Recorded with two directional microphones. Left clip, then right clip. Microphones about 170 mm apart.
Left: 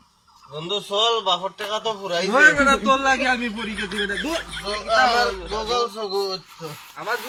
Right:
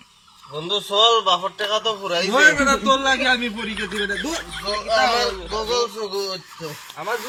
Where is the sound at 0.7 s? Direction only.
45° left (ahead or behind).